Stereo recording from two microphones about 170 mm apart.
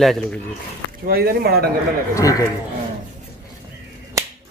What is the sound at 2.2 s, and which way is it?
Speech, 20° left (ahead or behind).